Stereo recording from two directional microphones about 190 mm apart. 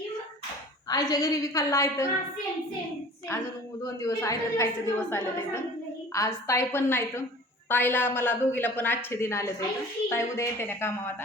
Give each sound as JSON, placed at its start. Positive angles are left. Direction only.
{"t": 0.9, "sound": "a woman's voice", "side_deg": 20}
{"t": 3.3, "sound": "a woman's voice", "side_deg": 15}